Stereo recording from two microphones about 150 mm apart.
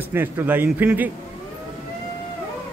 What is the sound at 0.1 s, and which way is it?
A man's voice, 15° right (ahead or behind).